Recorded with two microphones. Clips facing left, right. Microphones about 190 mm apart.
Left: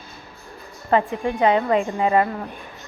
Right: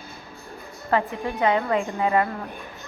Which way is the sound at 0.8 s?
25° left (ahead or behind).